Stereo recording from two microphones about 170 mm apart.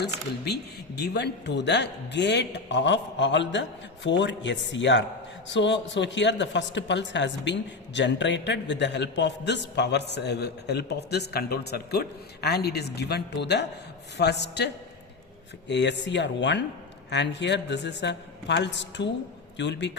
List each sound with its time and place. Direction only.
0.0 s a man's voice: 75° left (ahead or behind); by 19.9 s 90° left